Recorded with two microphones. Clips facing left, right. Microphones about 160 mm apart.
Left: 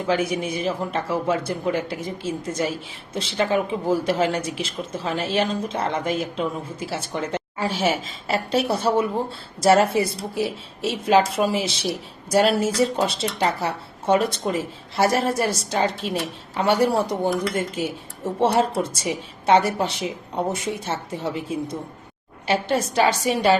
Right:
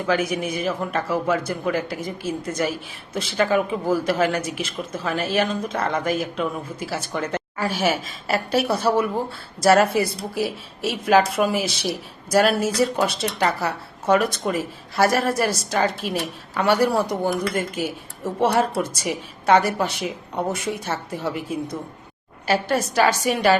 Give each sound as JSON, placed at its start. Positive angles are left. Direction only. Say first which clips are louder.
{"t": 0.1, "sound": "speech", "louder": "even", "side_deg": 30}